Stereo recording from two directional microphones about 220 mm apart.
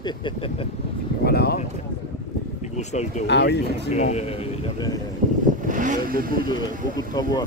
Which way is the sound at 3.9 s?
30° left (ahead or behind).